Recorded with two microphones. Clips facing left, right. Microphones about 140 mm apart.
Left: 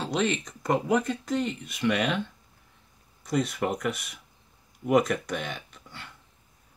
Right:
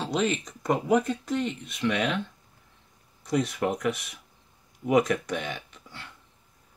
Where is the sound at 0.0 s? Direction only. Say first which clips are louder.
Even; centre (ahead or behind).